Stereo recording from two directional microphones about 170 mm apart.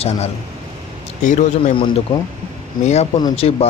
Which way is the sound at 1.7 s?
30° left (ahead or behind).